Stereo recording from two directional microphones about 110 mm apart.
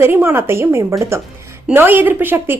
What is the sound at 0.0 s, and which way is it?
A woman's voice, 20° right (ahead or behind).